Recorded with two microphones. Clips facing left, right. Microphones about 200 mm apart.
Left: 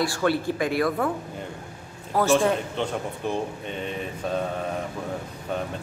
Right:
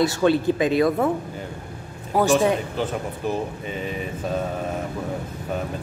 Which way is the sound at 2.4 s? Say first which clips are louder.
Right 2 dB; 5° right (ahead or behind).